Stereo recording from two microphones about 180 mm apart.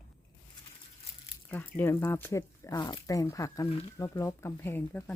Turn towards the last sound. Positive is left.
turn(degrees=15)  # may be behind; listen again after turning